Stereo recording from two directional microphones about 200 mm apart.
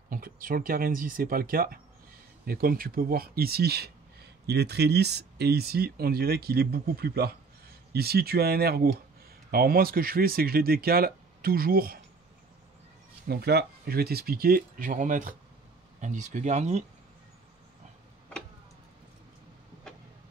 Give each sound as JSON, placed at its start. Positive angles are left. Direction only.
{"t": 0.1, "sound": "speech", "side_deg": -45}
{"t": 13.3, "sound": "speech", "side_deg": -55}